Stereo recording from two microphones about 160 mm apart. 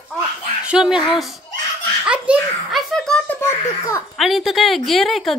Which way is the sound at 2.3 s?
10° right (ahead or behind).